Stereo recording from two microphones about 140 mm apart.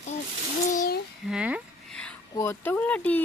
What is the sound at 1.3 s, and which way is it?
Speech, 10° right (ahead or behind).